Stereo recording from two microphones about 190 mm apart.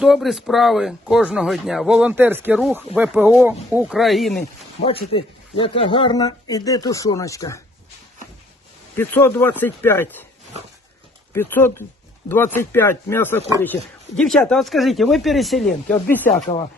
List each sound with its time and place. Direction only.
0.0 s speech: centre (ahead or behind)
4.8 s speech: 90° left
5.1 s speech: 30° left (ahead or behind)
9.0 s speech: 10° left (ahead or behind)
11.3 s speech: 10° left (ahead or behind)